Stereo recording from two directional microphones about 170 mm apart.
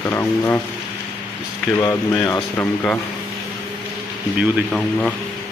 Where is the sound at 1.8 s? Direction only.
15° left (ahead or behind).